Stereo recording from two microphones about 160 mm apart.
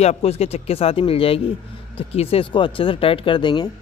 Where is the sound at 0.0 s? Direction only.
40° left (ahead or behind).